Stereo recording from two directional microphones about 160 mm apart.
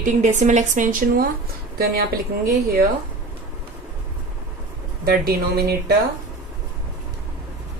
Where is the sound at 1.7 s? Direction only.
70° right (ahead or behind).